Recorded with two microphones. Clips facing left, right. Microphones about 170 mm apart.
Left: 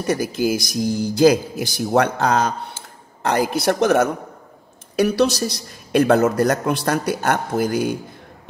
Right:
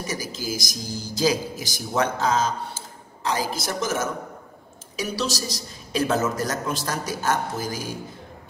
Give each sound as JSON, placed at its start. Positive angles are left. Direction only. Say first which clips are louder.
{"t": 0.0, "sound": "a man's voice", "louder": "left 11 dB", "side_deg": 60}